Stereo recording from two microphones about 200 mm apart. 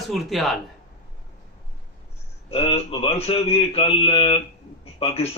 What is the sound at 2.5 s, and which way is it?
Speech, 30° left (ahead or behind).